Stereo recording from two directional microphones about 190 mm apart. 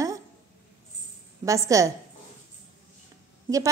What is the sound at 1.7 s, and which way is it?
Speech, 15° right (ahead or behind).